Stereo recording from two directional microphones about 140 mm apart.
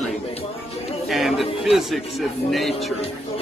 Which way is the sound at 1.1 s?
Centre (ahead or behind).